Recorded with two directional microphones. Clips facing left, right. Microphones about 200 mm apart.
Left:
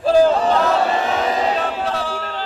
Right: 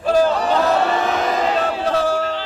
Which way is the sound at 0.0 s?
30° left (ahead or behind).